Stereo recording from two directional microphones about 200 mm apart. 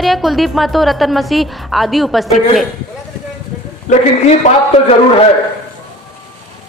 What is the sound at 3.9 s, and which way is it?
Speech, 35° left (ahead or behind).